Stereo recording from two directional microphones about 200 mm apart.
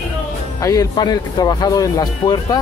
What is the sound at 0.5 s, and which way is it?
Speech, 15° left (ahead or behind).